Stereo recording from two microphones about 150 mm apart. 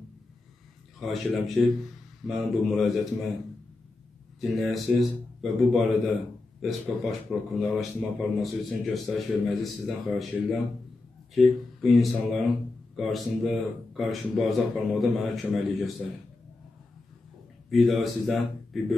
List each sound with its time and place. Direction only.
0.9 s a man's voice: centre (ahead or behind)
4.4 s a man's voice: centre (ahead or behind)
17.6 s a man's voice: centre (ahead or behind)